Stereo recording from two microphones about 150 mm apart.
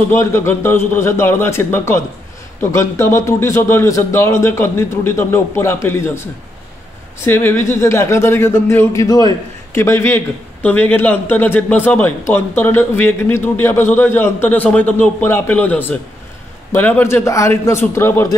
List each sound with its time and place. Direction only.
0.1 s a man's voice: 15° left (ahead or behind)